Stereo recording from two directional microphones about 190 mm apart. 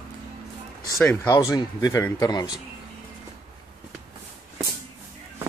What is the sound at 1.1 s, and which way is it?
Speech, 15° left (ahead or behind).